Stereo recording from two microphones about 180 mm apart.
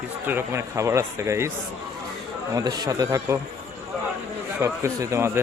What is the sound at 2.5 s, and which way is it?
Speech, 20° right (ahead or behind).